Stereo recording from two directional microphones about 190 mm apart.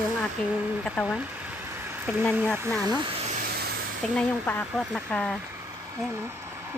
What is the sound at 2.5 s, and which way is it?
Speech, 5° left (ahead or behind).